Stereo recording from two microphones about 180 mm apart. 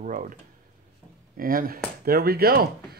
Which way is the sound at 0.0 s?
45° right (ahead or behind).